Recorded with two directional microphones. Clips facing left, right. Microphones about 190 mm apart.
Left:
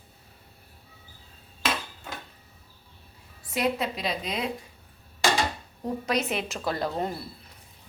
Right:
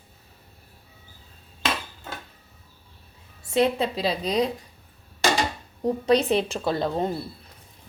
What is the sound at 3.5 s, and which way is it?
Speech, 30° right (ahead or behind).